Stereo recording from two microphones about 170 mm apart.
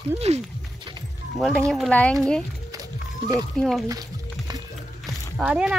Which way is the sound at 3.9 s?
20° right (ahead or behind).